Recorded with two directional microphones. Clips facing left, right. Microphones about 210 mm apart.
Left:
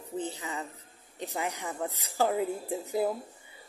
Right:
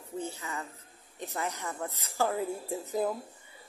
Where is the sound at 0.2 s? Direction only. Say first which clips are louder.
Left 1 dB; 20° left (ahead or behind).